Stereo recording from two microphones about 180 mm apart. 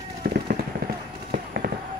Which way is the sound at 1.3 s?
60° right (ahead or behind).